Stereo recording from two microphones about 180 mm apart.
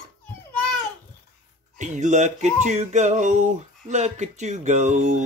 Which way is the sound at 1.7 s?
45° right (ahead or behind).